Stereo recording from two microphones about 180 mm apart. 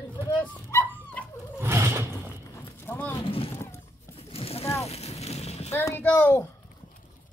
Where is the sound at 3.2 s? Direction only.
30° left (ahead or behind).